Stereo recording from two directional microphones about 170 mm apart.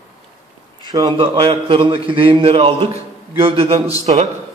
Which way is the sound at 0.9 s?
30° right (ahead or behind).